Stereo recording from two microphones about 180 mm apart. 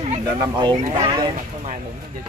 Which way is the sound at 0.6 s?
25° right (ahead or behind).